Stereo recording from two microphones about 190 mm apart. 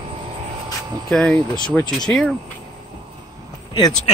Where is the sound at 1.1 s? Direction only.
Centre (ahead or behind).